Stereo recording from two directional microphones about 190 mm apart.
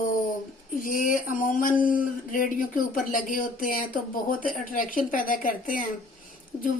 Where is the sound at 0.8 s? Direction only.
45° left (ahead or behind).